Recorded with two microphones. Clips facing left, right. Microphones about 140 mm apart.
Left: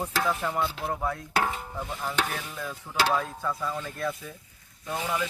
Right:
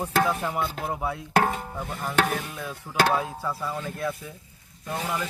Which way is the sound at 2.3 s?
5° right (ahead or behind).